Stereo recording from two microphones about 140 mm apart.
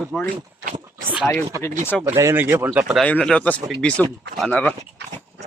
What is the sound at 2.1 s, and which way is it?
Speech, 15° right (ahead or behind).